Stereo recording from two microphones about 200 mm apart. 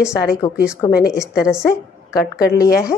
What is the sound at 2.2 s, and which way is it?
Speech, 50° left (ahead or behind).